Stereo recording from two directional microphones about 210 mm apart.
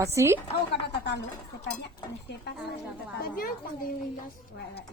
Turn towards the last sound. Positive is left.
turn(degrees=45)  # may be behind; listen again after turning